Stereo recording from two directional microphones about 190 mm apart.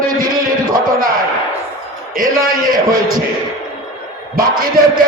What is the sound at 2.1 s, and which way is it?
Speech, 50° right (ahead or behind).